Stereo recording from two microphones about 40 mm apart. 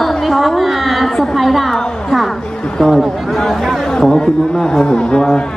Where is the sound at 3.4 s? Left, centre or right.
Centre.